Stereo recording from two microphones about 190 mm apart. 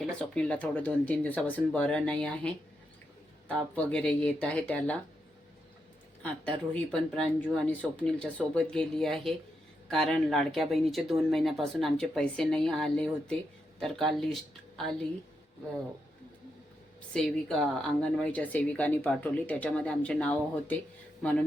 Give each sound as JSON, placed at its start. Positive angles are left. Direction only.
{"t": 0.2, "sound": "speech", "side_deg": 5}
{"t": 6.4, "sound": "speech", "side_deg": 5}
{"t": 17.2, "sound": "speech", "side_deg": 0}